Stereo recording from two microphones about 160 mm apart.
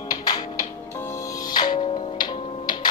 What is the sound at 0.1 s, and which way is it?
Music, 25° left (ahead or behind).